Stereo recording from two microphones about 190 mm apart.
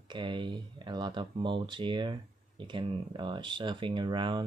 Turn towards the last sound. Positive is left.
turn(degrees=-25)  # may be behind; listen again after turning